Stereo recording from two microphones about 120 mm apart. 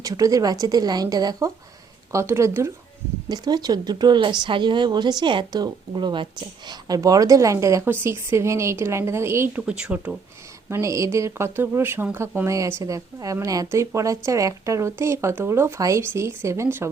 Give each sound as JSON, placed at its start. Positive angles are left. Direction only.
{"t": 0.0, "sound": "a woman's voice", "side_deg": -30}
{"t": 3.2, "sound": "a woman's voice", "side_deg": -35}
{"t": 10.7, "sound": "a woman's voice", "side_deg": -25}